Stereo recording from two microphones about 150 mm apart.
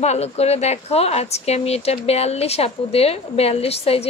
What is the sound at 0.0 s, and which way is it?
A woman's voice, 45° left (ahead or behind).